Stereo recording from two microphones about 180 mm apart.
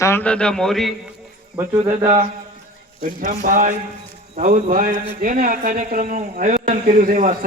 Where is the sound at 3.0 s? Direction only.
50° right (ahead or behind).